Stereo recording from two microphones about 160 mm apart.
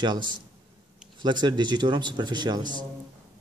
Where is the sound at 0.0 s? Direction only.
30° right (ahead or behind).